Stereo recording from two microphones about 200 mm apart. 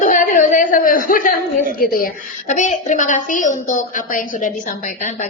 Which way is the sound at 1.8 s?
45° left (ahead or behind).